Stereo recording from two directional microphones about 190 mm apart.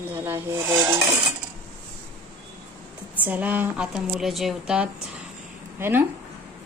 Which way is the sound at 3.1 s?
10° right (ahead or behind).